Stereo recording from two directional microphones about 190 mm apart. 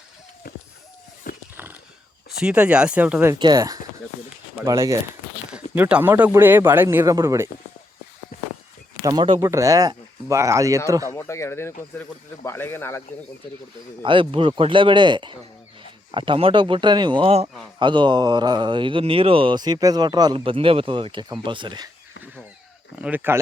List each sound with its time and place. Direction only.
1.3 s horse: 50° left (ahead or behind)
2.4 s speech: 5° right (ahead or behind)
3.3 s speech: 20° right (ahead or behind)
8.3 s a sound: 50° left (ahead or behind)
9.0 s speech: 25° right (ahead or behind)
11.1 s speech: 15° left (ahead or behind)
14.0 s speech: 25° right (ahead or behind)
23.0 s speech: 10° right (ahead or behind)